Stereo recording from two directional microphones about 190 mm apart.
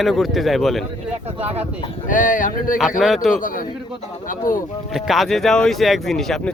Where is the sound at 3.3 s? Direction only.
45° left (ahead or behind).